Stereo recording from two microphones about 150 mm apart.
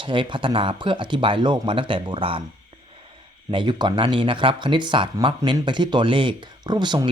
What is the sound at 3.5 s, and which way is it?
Speech, 30° right (ahead or behind).